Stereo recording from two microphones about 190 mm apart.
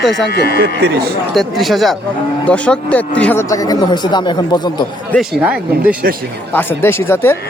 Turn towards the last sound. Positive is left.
turn(degrees=10)  # may be behind; listen again after turning